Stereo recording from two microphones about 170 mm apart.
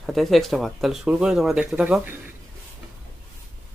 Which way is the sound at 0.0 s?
Centre (ahead or behind).